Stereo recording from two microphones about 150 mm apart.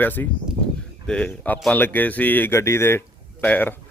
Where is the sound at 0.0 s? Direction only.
10° left (ahead or behind).